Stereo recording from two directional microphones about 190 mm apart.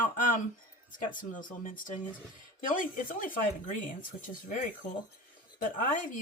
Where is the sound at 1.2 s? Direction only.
45° left (ahead or behind).